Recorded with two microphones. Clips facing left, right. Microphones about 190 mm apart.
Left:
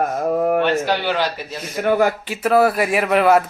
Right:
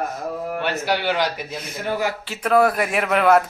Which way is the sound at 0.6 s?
10° right (ahead or behind).